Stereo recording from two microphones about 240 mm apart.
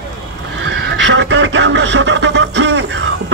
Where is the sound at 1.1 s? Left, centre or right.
Right.